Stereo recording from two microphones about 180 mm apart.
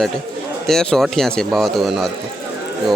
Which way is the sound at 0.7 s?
5° left (ahead or behind).